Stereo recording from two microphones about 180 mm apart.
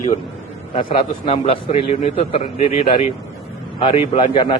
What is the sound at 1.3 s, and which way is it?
A man's voice, 30° left (ahead or behind).